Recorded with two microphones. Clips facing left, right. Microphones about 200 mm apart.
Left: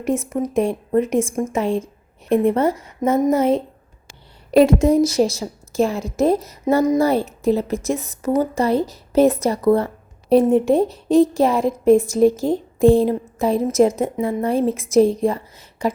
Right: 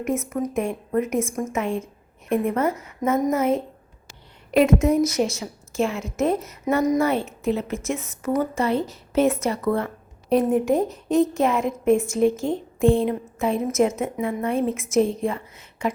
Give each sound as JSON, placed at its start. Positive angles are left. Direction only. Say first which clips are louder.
{"t": 0.0, "sound": "a woman's voice", "louder": "left 3 dB", "side_deg": 30}
{"t": 4.8, "sound": "a woman's voice", "louder": "left 4 dB", "side_deg": 35}